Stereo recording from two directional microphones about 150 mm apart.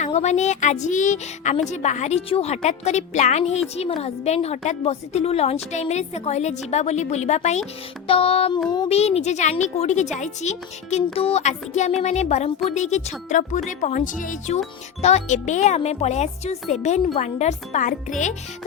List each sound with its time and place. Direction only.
0.0 s a woman's voice: 50° left (ahead or behind)
8.0 s music: 40° left (ahead or behind)
8.9 s a woman's voice: 45° left (ahead or behind)